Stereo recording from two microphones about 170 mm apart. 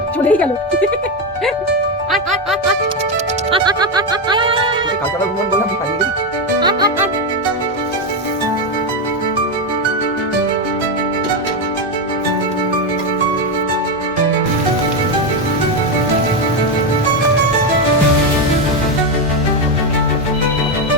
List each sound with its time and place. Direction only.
0.3 s speech: 10° left (ahead or behind)
3.5 s music: 25° right (ahead or behind)
6.6 s music: 25° right (ahead or behind)